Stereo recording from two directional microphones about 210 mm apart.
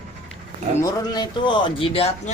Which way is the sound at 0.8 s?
20° left (ahead or behind).